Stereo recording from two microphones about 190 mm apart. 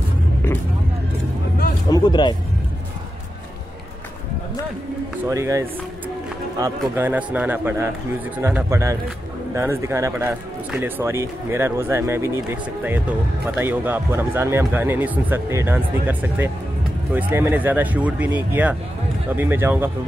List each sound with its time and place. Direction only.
1.9 s speech: 20° left (ahead or behind)
5.3 s speech: 15° right (ahead or behind)
13.6 s speech: 10° right (ahead or behind)